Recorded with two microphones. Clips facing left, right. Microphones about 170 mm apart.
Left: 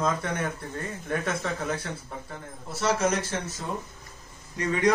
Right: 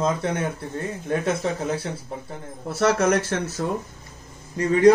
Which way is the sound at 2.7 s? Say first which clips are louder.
Right 6 dB; 60° right (ahead or behind).